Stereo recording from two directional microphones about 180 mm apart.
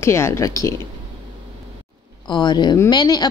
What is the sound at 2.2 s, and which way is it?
A woman's voice, 25° left (ahead or behind).